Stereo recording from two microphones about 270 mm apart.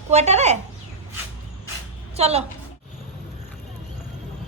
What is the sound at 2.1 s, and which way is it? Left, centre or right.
Speech, right.